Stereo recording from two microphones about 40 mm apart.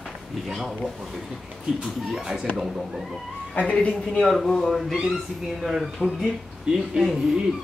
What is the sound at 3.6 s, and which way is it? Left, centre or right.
Speech, left.